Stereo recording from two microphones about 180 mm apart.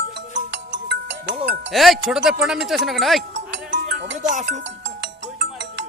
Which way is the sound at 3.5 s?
80° right.